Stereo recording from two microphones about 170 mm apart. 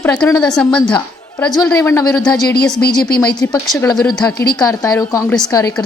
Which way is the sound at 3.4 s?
20° left (ahead or behind).